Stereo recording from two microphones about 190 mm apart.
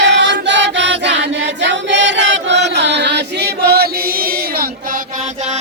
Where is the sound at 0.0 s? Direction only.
65° right (ahead or behind).